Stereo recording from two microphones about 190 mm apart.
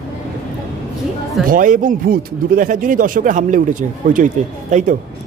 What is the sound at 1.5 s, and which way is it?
Speech, 45° right (ahead or behind).